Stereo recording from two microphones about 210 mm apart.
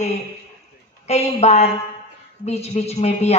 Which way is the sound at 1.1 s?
30° left (ahead or behind).